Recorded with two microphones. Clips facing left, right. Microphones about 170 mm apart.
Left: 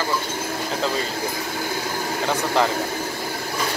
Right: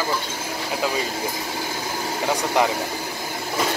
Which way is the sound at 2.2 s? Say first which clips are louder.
Even; 15° right (ahead or behind).